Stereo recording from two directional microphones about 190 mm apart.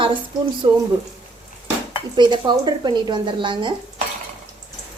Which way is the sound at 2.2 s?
25° right (ahead or behind).